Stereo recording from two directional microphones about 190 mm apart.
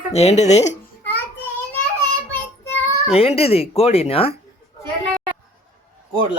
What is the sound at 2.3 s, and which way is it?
Child singing, 10° left (ahead or behind).